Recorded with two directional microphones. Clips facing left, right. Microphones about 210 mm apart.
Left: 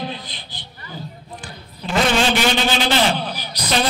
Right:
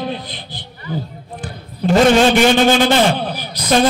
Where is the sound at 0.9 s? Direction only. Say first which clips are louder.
Right 8 dB; 55° right (ahead or behind).